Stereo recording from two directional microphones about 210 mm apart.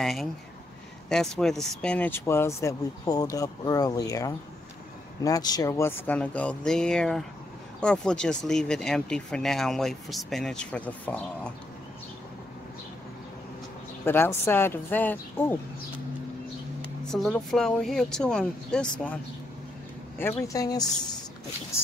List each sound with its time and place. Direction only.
0.0 s speech: centre (ahead or behind)
14.0 s speech: 10° left (ahead or behind)
17.1 s speech: centre (ahead or behind)
20.2 s speech: 15° left (ahead or behind)